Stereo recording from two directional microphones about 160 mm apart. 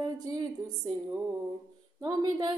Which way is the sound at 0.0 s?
25° right (ahead or behind).